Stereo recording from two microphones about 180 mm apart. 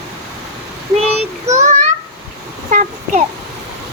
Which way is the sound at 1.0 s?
35° right (ahead or behind).